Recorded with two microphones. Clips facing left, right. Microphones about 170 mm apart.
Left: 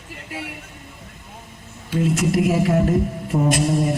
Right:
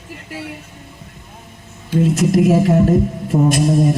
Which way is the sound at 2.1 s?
40° right (ahead or behind).